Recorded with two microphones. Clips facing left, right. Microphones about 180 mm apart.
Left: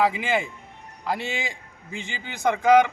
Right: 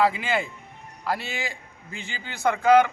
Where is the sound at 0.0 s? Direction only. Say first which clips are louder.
Even; 15° left (ahead or behind).